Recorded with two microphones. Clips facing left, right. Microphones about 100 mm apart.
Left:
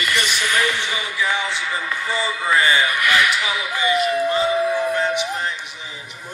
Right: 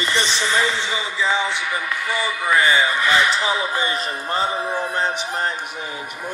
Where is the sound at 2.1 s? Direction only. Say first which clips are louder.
Left 1 dB; 15° left (ahead or behind).